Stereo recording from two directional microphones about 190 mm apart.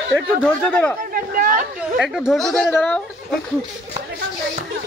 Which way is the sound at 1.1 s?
50° right (ahead or behind).